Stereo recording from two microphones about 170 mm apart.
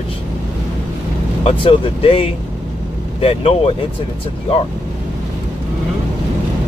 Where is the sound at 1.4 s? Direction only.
30° left (ahead or behind).